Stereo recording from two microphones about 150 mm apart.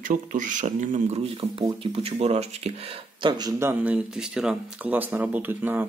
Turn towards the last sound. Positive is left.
turn(degrees=-15)  # may be behind; listen again after turning